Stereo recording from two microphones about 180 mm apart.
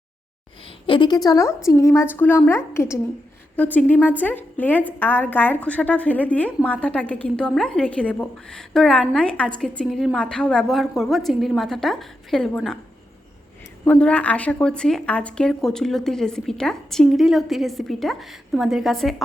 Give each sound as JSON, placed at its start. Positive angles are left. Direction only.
{"t": 0.9, "sound": "a woman's voice", "side_deg": 25}
{"t": 13.8, "sound": "a woman's voice", "side_deg": 10}